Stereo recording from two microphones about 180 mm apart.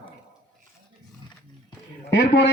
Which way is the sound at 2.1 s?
70° left (ahead or behind).